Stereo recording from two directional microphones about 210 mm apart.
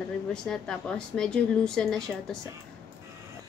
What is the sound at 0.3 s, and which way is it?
A woman's voice, 5° left (ahead or behind).